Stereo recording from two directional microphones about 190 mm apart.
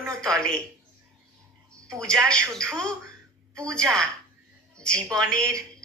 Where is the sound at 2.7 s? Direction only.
5° left (ahead or behind).